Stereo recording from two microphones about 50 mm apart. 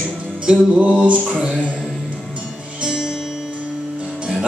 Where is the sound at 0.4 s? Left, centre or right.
Right.